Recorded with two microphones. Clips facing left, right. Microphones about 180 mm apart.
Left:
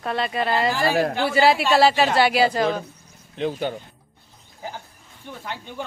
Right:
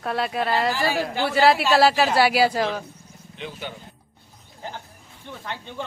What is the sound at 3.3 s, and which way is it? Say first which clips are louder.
Speech: left 10 dB; 40° left (ahead or behind).